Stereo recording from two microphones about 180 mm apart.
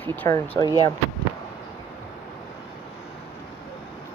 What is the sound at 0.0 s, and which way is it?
Speech, 10° left (ahead or behind).